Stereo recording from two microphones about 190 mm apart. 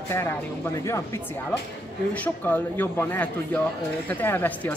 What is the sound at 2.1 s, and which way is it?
Speech, 10° left (ahead or behind).